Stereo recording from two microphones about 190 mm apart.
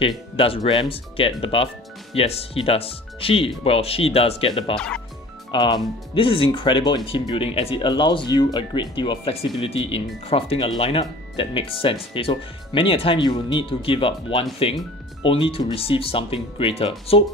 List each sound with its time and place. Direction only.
0.7 s speech: 30° left (ahead or behind)
4.7 s speech: 5° left (ahead or behind)
5.5 s speech: 25° left (ahead or behind)